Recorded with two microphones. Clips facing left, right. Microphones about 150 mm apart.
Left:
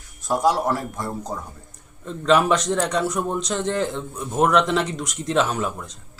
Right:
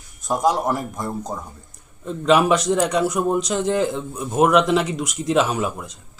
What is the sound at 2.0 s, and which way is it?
A man's voice, 10° right (ahead or behind).